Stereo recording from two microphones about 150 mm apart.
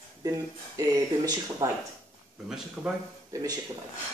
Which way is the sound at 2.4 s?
5° right (ahead or behind).